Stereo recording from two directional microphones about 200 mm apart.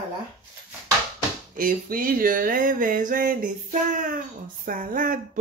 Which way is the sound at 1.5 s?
45° right (ahead or behind).